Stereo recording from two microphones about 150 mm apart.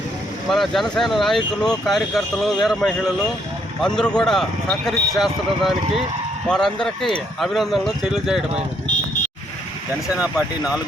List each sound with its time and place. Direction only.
0.5 s speech: centre (ahead or behind)
10.2 s speech: 5° right (ahead or behind)